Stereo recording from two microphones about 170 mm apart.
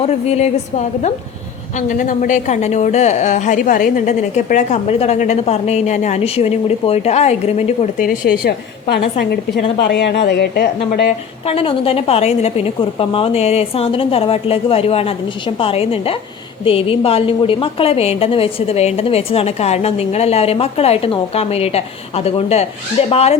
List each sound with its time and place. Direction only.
0.0 s a woman's voice: 40° left (ahead or behind)
8.0 s a woman's voice: 70° left (ahead or behind)
9.6 s a woman's voice: 35° left (ahead or behind)
9.8 s a woman's voice: 85° left; by 11.1 s 70° left (ahead or behind)
11.4 s a woman's voice: 35° left (ahead or behind)